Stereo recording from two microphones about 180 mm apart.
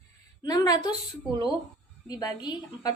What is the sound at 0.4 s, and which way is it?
Speech, 20° left (ahead or behind).